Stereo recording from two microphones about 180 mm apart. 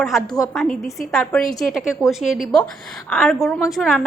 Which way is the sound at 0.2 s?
20° left (ahead or behind).